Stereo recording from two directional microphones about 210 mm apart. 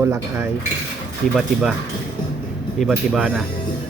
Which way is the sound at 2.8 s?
Centre (ahead or behind).